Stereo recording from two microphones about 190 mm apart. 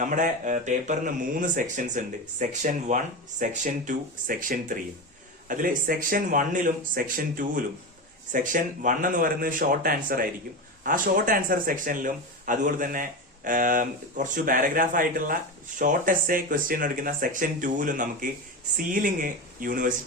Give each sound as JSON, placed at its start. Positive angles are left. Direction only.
{"t": 0.0, "sound": "speech", "side_deg": -45}